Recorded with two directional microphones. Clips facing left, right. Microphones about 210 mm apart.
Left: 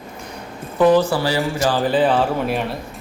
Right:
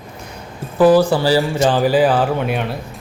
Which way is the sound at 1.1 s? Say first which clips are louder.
Right 5 dB; 30° right (ahead or behind).